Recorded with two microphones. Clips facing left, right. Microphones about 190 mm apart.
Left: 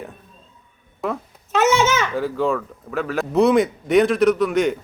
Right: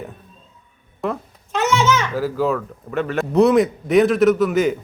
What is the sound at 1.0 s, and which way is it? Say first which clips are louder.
A child's voice: right 1 dB; centre (ahead or behind).